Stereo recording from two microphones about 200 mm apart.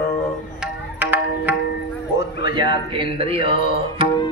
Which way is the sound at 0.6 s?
10° right (ahead or behind).